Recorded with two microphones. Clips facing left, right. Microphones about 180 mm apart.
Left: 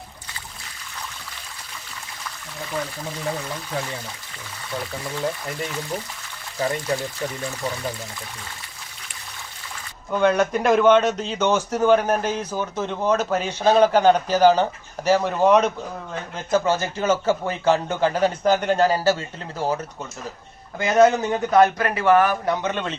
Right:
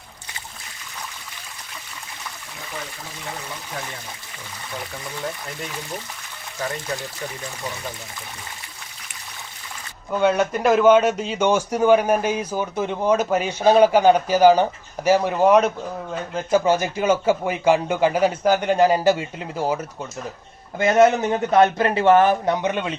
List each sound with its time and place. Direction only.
10.1 s a man's voice: 5° right (ahead or behind)
21.0 s speech: 25° right (ahead or behind)